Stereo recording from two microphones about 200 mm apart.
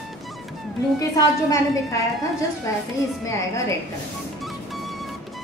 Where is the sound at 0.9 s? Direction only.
15° left (ahead or behind).